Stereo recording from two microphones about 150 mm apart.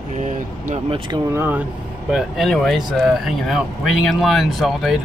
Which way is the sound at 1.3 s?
15° right (ahead or behind).